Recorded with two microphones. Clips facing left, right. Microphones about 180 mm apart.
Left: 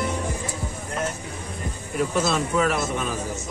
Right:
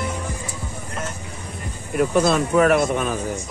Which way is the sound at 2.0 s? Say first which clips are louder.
Right 5 dB; 55° right (ahead or behind).